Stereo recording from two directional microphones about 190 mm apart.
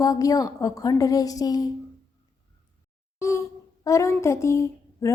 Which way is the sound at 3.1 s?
15° left (ahead or behind).